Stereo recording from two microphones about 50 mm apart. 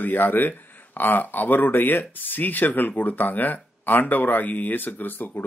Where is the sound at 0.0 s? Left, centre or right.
Left.